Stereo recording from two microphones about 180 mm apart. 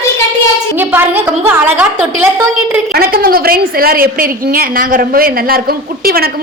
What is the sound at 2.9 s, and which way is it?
A woman's voice, 55° right (ahead or behind).